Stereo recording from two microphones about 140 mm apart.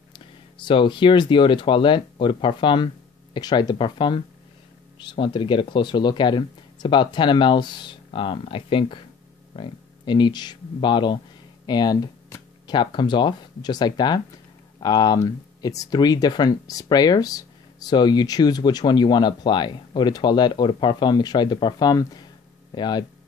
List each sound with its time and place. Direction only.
0.7 s speech: 35° left (ahead or behind)